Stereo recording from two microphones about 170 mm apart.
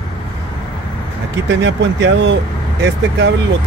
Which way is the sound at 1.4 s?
90° right.